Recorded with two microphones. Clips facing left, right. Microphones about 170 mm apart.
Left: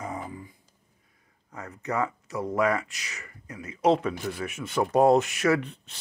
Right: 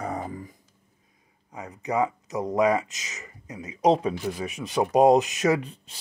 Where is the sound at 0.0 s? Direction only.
35° right (ahead or behind).